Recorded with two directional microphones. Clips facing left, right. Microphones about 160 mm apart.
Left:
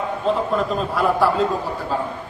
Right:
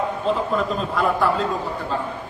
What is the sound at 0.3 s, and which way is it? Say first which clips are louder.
Speech: left 2 dB; centre (ahead or behind).